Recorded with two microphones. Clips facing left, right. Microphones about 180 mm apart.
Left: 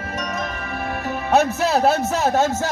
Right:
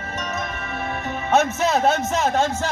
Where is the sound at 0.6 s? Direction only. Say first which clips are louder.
Left 2 dB; 35° left (ahead or behind).